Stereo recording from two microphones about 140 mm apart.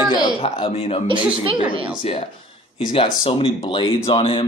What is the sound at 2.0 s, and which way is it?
Speech, 45° left (ahead or behind).